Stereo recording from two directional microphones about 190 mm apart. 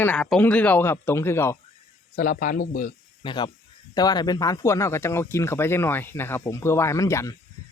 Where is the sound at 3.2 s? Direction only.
25° left (ahead or behind).